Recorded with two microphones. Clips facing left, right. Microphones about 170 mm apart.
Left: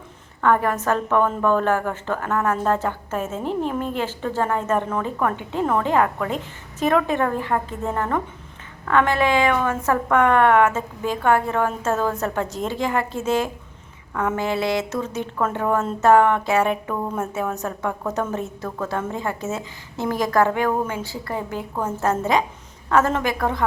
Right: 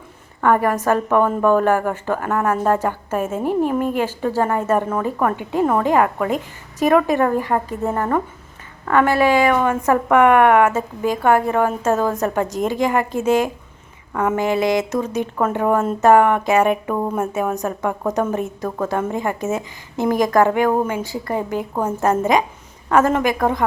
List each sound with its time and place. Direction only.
0.6 s a woman's voice: 10° right (ahead or behind)